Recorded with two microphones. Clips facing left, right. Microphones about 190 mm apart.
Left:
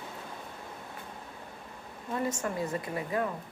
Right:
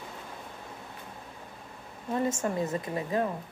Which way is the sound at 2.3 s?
25° right (ahead or behind).